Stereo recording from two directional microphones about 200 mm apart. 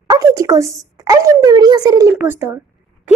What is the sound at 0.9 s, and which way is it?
Speech, 15° right (ahead or behind).